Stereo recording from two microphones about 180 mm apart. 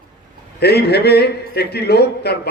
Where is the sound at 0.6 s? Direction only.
65° left (ahead or behind).